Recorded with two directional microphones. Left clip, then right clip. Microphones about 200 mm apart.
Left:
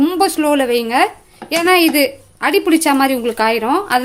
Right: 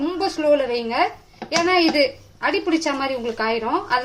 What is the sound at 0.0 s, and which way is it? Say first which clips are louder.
A woman's voice: left 7 dB; 55° left (ahead or behind).